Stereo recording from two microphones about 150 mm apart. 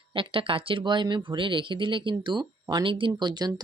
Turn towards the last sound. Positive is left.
turn(degrees=-30)  # may be behind; listen again after turning